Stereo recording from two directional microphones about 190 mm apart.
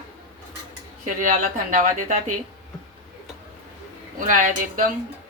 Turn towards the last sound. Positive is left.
turn(degrees=-45)  # may be behind; listen again after turning